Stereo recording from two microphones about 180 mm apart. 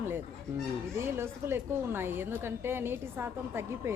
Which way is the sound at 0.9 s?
15° right (ahead or behind).